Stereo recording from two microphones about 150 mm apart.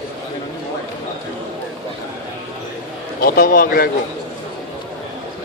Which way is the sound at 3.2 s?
85° left.